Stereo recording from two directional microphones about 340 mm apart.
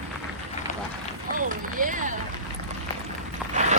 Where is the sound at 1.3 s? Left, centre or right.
Right.